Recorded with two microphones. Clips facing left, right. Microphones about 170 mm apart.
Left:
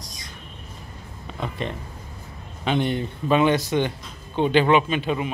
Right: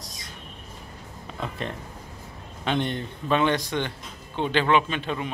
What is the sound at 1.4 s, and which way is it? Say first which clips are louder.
A man's voice: left 3 dB; centre (ahead or behind).